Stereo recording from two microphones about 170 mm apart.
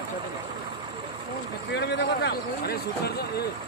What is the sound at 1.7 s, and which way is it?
Speech, 80° left.